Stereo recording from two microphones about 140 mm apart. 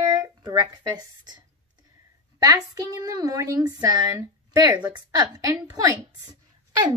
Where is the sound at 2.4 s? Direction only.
25° right (ahead or behind).